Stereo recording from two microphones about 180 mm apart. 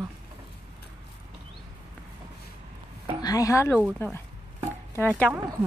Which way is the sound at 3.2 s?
20° left (ahead or behind).